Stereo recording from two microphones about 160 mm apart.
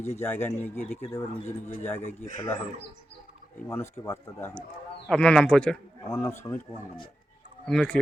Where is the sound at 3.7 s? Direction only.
15° left (ahead or behind).